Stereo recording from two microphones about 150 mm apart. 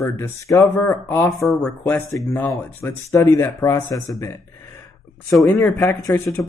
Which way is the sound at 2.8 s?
20° left (ahead or behind).